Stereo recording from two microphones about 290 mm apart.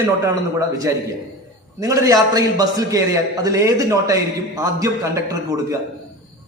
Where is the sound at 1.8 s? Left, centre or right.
Centre.